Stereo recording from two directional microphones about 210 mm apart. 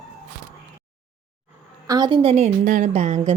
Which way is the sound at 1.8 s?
20° right (ahead or behind).